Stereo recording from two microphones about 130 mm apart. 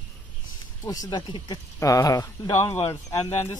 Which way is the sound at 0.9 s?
30° left (ahead or behind).